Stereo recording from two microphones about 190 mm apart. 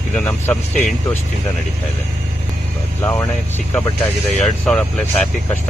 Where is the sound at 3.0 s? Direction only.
15° left (ahead or behind).